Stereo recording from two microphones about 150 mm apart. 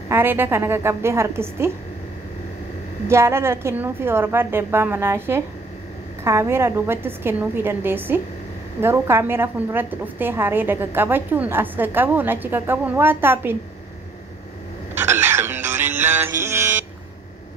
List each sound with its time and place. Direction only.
0.1 s a woman's voice: 15° right (ahead or behind)
3.1 s a woman's voice: 20° right (ahead or behind)
15.0 s music: 15° right (ahead or behind)